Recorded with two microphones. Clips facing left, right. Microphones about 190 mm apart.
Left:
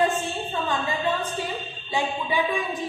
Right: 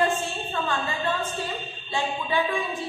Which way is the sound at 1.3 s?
15° left (ahead or behind).